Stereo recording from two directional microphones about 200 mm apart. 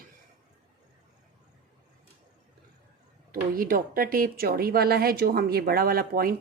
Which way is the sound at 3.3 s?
45° right (ahead or behind).